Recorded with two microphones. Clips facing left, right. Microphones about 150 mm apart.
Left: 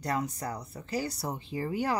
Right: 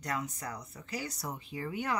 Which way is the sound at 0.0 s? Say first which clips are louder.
Left 5 dB; 35° left (ahead or behind).